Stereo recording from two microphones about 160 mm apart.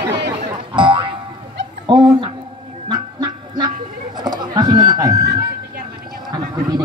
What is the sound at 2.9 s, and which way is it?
Duck, 25° right (ahead or behind).